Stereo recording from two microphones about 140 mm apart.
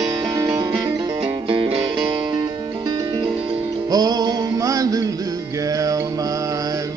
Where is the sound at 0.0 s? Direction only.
30° right (ahead or behind).